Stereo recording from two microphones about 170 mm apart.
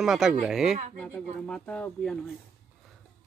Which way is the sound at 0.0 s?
5° right (ahead or behind).